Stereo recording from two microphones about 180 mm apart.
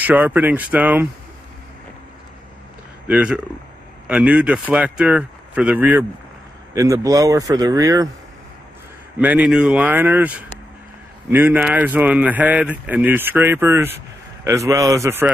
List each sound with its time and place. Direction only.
0.0 s speech: 10° right (ahead or behind)
3.1 s speech: 5° right (ahead or behind)
9.2 s speech: 5° right (ahead or behind)